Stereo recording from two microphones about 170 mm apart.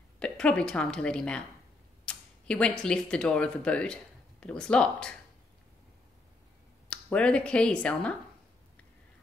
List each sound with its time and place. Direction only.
0.2 s a woman's voice: 5° left (ahead or behind)
6.9 s speech: 5° left (ahead or behind)